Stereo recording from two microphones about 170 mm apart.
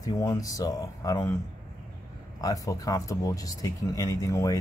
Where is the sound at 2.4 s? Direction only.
20° left (ahead or behind).